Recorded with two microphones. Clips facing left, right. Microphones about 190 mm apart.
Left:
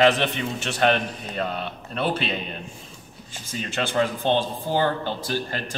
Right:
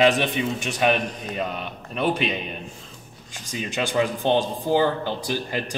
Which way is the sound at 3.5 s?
15° right (ahead or behind).